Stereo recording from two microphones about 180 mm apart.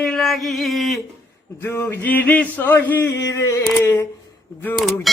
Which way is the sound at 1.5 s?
15° left (ahead or behind).